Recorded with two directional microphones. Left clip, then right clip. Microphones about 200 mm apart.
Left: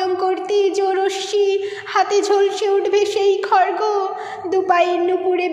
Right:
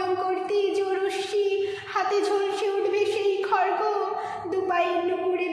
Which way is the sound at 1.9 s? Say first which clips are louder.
Left 9 dB; 40° left (ahead or behind).